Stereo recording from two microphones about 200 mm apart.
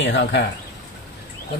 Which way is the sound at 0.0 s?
60° left (ahead or behind).